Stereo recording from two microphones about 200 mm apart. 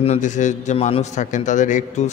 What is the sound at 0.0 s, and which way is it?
A man's voice, 35° left (ahead or behind).